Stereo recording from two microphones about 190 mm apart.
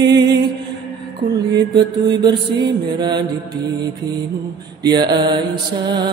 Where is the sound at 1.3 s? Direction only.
20° right (ahead or behind).